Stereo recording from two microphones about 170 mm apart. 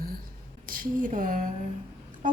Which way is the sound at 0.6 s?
55° right (ahead or behind).